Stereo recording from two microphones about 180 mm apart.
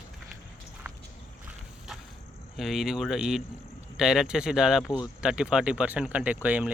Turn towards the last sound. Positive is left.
turn(degrees=-10)  # may be behind; listen again after turning